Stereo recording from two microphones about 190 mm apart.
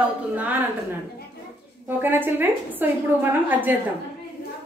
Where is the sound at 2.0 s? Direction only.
10° right (ahead or behind).